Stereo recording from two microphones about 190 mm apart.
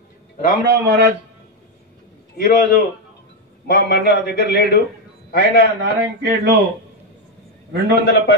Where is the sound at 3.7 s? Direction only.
55° left (ahead or behind).